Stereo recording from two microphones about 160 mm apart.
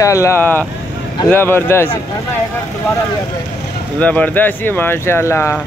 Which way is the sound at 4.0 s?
10° left (ahead or behind).